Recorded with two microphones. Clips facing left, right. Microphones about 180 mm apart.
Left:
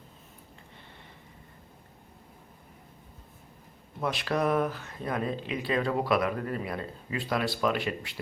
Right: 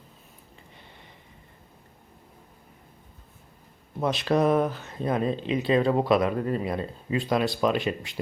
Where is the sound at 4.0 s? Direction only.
25° right (ahead or behind).